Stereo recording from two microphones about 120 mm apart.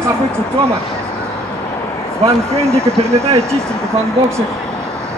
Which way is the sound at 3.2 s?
60° right (ahead or behind).